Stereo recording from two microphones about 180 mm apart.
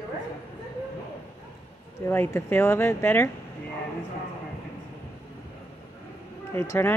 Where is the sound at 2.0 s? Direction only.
10° left (ahead or behind).